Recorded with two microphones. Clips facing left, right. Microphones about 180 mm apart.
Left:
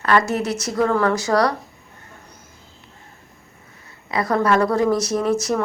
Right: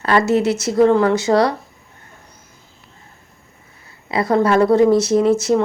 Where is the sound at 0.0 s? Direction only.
25° right (ahead or behind).